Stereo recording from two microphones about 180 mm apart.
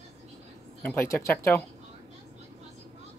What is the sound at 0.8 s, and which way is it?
Speech, 15° left (ahead or behind).